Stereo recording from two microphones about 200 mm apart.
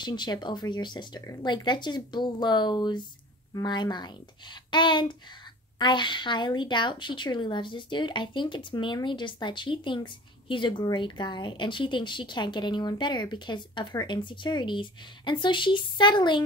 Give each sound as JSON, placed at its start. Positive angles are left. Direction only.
{"t": 0.0, "sound": "speech", "side_deg": 20}